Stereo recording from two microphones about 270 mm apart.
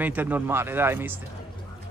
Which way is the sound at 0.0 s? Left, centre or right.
Centre.